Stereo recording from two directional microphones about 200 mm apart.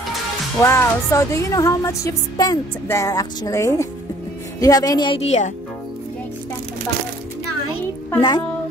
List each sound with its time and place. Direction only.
0.6 s a woman's voice: 15° left (ahead or behind); by 5.5 s 35° left (ahead or behind)
8.2 s a woman's voice: 20° left (ahead or behind)